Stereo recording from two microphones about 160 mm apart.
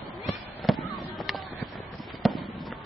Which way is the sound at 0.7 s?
Centre (ahead or behind).